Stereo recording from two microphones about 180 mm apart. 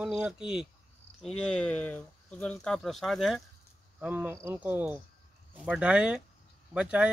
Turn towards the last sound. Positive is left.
turn(degrees=-5)  # may be behind; listen again after turning